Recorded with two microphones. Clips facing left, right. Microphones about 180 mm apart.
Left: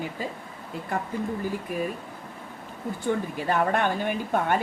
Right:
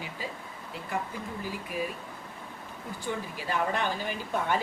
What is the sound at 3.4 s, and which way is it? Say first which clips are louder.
Speech: left 4 dB; 55° left (ahead or behind).